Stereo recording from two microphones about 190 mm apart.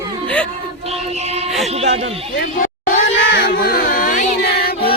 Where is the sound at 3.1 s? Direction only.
75° left (ahead or behind).